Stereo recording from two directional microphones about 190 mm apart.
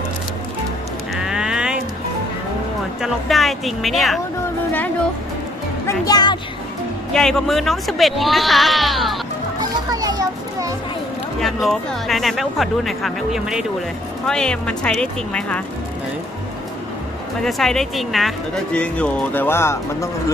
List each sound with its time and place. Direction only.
1.1 s a sound: 5° right (ahead or behind)
3.0 s speech: centre (ahead or behind)
5.9 s speech: 20° left (ahead or behind)
7.1 s speech: 5° left (ahead or behind)
9.6 s children playing: 20° right (ahead or behind)
11.4 s speech: centre (ahead or behind)
17.4 s speech: centre (ahead or behind)